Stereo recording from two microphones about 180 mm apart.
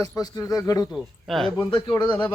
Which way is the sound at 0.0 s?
20° left (ahead or behind).